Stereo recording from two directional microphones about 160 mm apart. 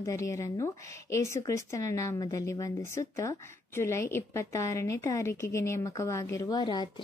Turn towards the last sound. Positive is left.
turn(degrees=25)  # may be behind; listen again after turning